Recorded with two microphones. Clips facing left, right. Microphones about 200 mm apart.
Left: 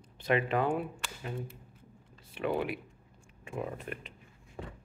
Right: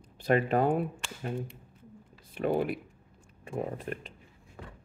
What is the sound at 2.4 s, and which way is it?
Speech, 40° right (ahead or behind).